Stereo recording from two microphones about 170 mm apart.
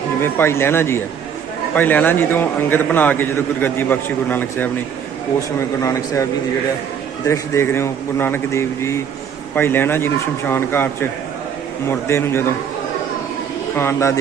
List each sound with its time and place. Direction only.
0.2 s a man's voice: 15° left (ahead or behind)
7.3 s a man's voice: 15° left (ahead or behind)
13.7 s a man's voice: 15° left (ahead or behind)